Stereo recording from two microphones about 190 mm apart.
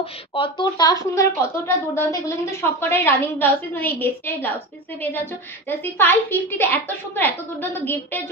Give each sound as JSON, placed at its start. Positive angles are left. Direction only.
{"t": 0.0, "sound": "a woman's voice", "side_deg": 25}